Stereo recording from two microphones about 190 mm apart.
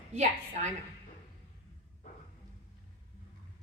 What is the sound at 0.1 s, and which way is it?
Speech, 35° right (ahead or behind).